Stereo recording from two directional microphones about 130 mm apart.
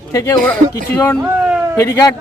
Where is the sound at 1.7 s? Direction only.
20° left (ahead or behind).